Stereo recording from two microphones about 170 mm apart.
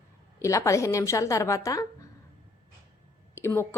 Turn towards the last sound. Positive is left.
turn(degrees=15)  # may be behind; listen again after turning